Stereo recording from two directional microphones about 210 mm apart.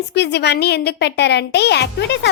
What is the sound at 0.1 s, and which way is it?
A child's voice, 50° left (ahead or behind).